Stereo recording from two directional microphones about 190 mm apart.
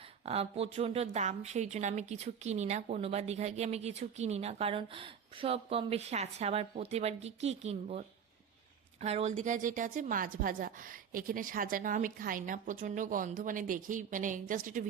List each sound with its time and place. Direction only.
0.3 s a woman's voice: 30° right (ahead or behind)